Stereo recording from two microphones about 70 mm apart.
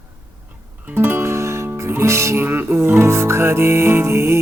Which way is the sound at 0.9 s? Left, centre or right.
Right.